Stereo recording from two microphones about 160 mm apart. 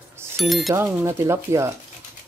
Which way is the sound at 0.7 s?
15° right (ahead or behind).